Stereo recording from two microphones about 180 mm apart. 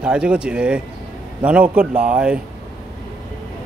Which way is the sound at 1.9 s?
50° right (ahead or behind).